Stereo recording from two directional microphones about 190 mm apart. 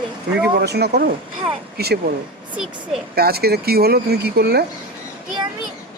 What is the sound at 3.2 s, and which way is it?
Speech, 55° right (ahead or behind).